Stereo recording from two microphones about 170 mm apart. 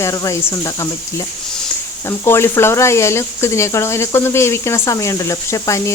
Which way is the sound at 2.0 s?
15° left (ahead or behind).